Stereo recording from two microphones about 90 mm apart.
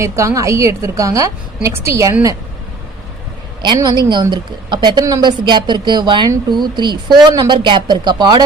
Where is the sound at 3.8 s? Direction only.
55° right (ahead or behind).